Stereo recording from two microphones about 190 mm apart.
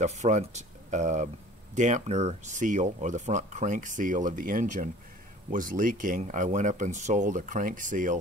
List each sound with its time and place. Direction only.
0.0 s speech: 40° right (ahead or behind)